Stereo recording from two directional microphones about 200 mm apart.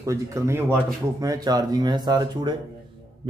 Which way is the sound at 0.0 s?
15° right (ahead or behind).